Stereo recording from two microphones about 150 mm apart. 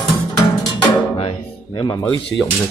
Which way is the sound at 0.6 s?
30° left (ahead or behind).